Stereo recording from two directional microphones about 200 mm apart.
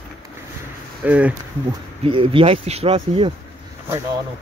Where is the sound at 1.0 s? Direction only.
5° right (ahead or behind).